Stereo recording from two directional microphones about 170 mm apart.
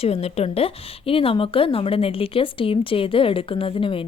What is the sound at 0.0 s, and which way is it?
A woman's voice, 35° left (ahead or behind).